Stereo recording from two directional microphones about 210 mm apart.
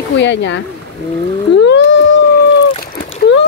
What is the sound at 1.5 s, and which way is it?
Whale vocalization, 55° left (ahead or behind).